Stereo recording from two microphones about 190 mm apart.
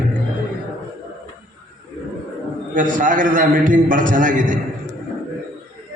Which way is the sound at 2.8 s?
45° right (ahead or behind).